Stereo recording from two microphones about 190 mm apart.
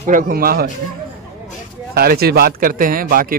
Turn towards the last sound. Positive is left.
turn(degrees=-50)  # may be behind; listen again after turning